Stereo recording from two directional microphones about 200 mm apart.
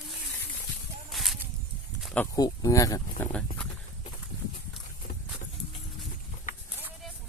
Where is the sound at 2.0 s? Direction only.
5° left (ahead or behind).